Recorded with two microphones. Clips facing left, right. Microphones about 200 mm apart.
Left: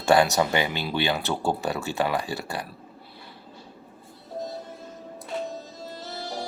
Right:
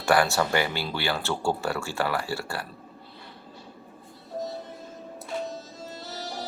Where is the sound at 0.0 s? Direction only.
25° left (ahead or behind).